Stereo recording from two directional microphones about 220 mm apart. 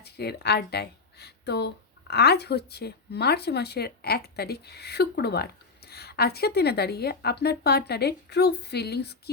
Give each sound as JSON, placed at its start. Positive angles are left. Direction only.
{"t": 0.0, "sound": "speech", "side_deg": 45}